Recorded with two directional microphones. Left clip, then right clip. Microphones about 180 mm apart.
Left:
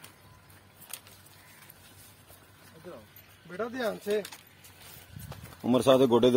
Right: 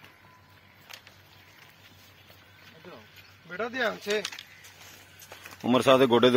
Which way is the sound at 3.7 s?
20° left (ahead or behind).